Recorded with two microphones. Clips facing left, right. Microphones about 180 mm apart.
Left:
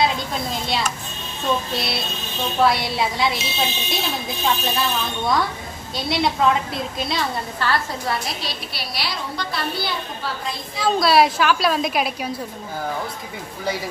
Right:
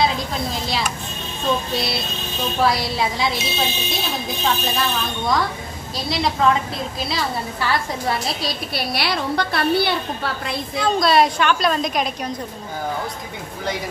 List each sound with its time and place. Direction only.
0.0 s a woman's voice: centre (ahead or behind)
2.6 s a woman's voice: centre (ahead or behind)
8.7 s a woman's voice: 60° right (ahead or behind)
10.8 s a woman's voice: 5° left (ahead or behind)